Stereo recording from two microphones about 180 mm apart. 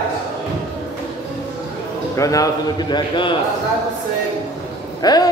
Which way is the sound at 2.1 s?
20° left (ahead or behind).